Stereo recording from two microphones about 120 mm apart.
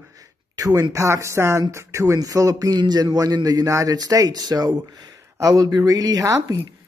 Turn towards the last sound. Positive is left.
turn(degrees=-30)  # may be behind; listen again after turning